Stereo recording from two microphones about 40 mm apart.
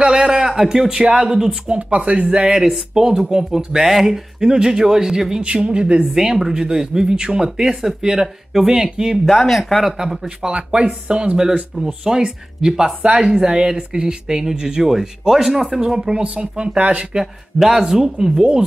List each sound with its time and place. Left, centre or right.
0.0 s speech: centre
1.3 s speech: centre
1.7 s speech: right
2.5 s speech: centre
9.3 s speech: centre
9.9 s speech: centre
11.7 s speech: centre; by 17.2 s right
17.6 s speech: centre